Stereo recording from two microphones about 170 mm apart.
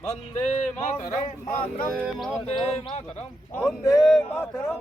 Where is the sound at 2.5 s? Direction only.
40° left (ahead or behind).